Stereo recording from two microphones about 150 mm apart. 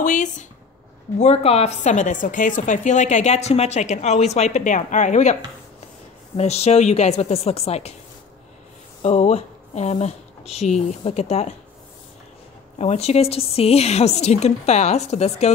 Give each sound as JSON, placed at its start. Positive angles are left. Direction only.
{"t": 0.0, "sound": "a sound", "side_deg": 55}
{"t": 1.2, "sound": "a woman's voice", "side_deg": 45}
{"t": 9.0, "sound": "speech", "side_deg": 45}
{"t": 12.7, "sound": "a woman's voice", "side_deg": 45}